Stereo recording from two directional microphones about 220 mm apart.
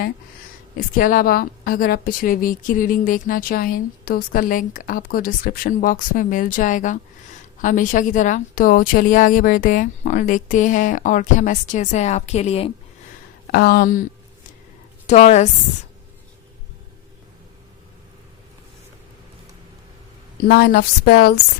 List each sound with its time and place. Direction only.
0.8 s a woman's voice: 40° left (ahead or behind)
13.5 s a woman's voice: 45° left (ahead or behind)
15.0 s speech: 30° left (ahead or behind)
20.4 s a woman's voice: 45° left (ahead or behind)